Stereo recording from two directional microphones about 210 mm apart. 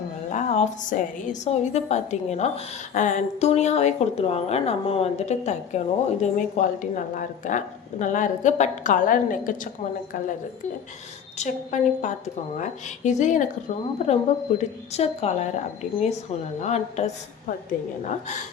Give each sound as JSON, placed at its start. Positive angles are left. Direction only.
{"t": 0.3, "sound": "a woman's voice", "side_deg": 35}
{"t": 11.3, "sound": "a woman's voice", "side_deg": 35}